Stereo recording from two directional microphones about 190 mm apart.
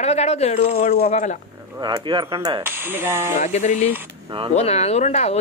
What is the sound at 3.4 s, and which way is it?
A woman's voice, 40° left (ahead or behind).